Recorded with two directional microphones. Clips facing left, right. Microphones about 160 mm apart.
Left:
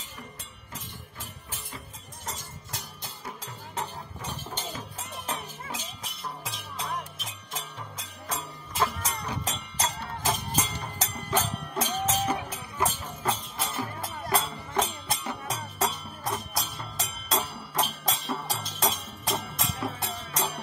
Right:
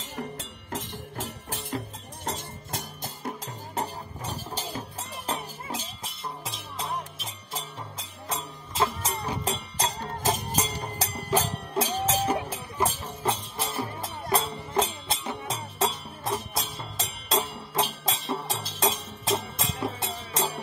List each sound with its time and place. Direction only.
0.0 s music: 80° right
2.2 s music: 60° right (ahead or behind)
3.4 s music: 40° right (ahead or behind)